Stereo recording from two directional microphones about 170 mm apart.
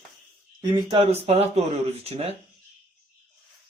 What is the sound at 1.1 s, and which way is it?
Speech, 40° right (ahead or behind).